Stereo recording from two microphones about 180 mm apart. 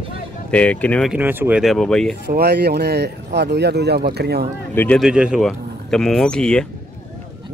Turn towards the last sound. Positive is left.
turn(degrees=5)  # may be behind; listen again after turning